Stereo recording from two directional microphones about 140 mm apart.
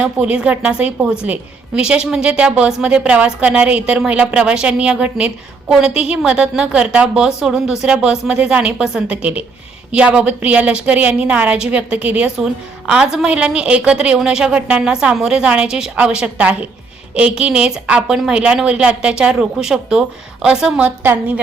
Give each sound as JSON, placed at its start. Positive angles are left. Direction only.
{"t": 0.0, "sound": "a woman's voice", "side_deg": -10}